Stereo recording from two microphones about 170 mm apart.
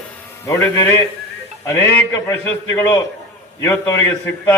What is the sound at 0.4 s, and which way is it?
A man's voice, 20° left (ahead or behind).